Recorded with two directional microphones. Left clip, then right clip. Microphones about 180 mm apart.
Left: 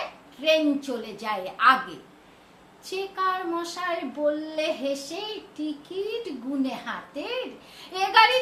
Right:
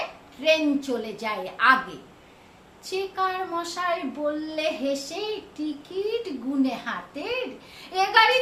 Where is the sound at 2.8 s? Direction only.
15° right (ahead or behind).